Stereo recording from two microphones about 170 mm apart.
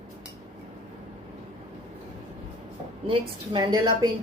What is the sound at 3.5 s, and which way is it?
Speech, 25° right (ahead or behind).